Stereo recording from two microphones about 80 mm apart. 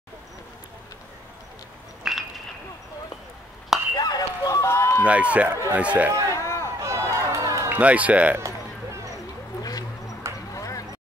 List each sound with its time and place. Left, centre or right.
2.0 s a sound: centre
3.9 s chop: left
4.6 s run: left
5.0 s speech: centre
6.3 s a sound: left
6.8 s run: right
7.7 s speech: centre
8.4 s run: right
9.6 s a sound: left